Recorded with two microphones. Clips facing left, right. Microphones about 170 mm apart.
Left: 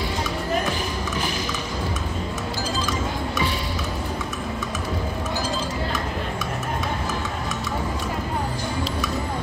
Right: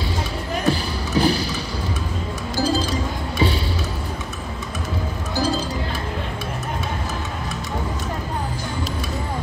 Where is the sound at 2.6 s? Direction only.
35° right (ahead or behind).